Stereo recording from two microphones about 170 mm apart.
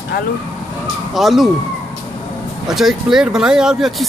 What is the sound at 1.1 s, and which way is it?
Speech, centre (ahead or behind).